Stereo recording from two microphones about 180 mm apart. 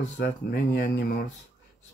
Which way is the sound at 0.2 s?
70° left (ahead or behind).